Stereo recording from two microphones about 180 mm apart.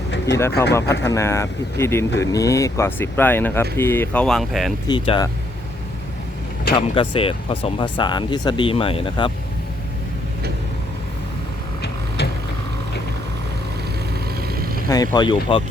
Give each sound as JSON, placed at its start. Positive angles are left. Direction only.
{"t": 0.5, "sound": "speech", "side_deg": 65}
{"t": 1.0, "sound": "speech", "side_deg": 15}
{"t": 4.9, "sound": "speech", "side_deg": 25}
{"t": 6.7, "sound": "speech", "side_deg": 30}
{"t": 11.8, "sound": "a sound", "side_deg": 65}
{"t": 14.4, "sound": "vehicle", "side_deg": -55}
{"t": 14.8, "sound": "speech", "side_deg": 20}